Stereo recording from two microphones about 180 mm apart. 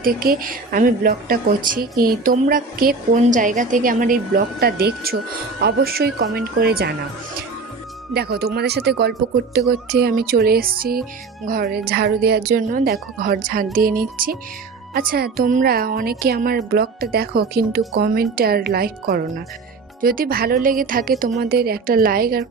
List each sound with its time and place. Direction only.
0.0 s speech: 55° right (ahead or behind)
8.1 s speech: 60° right (ahead or behind)